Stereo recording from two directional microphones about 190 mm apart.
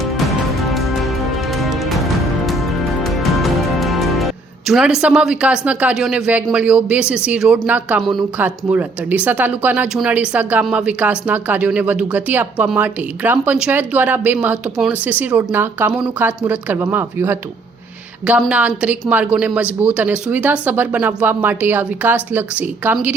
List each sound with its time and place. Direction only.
0.6 s music: centre (ahead or behind)
15.0 s a woman's voice: 10° right (ahead or behind)